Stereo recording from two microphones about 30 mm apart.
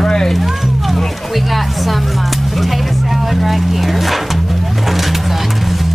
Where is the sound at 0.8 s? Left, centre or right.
Centre.